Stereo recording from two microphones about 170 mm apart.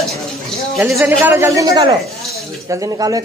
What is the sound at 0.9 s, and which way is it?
Speech, 15° right (ahead or behind).